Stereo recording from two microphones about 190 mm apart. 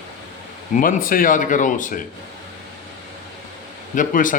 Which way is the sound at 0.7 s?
45° left (ahead or behind).